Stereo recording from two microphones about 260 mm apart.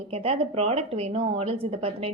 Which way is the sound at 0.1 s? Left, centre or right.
Right.